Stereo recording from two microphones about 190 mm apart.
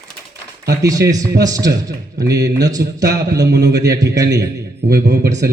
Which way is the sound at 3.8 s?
20° right (ahead or behind).